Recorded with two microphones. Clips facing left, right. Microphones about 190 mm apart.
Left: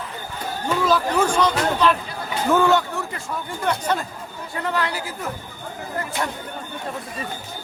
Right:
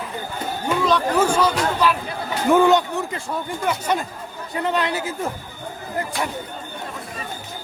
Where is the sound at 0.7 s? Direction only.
Centre (ahead or behind).